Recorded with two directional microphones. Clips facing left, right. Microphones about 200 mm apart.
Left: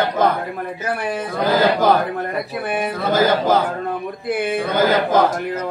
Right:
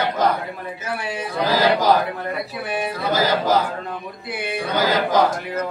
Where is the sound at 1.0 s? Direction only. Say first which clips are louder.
Left 2 dB; 55° left (ahead or behind).